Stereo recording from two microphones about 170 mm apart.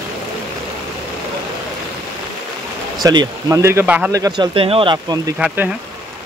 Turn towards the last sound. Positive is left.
turn(degrees=-5)  # may be behind; listen again after turning